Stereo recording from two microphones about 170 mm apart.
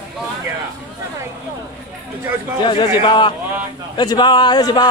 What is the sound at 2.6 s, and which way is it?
Speech, 25° left (ahead or behind).